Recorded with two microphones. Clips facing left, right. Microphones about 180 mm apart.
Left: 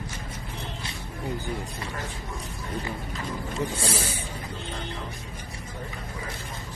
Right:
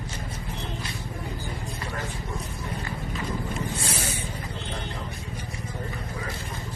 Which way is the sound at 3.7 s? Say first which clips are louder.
Left 2 dB; 30° left (ahead or behind).